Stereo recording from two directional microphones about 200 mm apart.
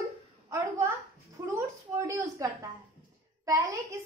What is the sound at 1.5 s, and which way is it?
A woman's voice, 15° right (ahead or behind).